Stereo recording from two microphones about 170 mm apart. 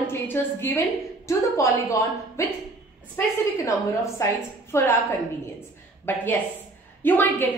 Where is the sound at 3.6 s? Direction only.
15° left (ahead or behind).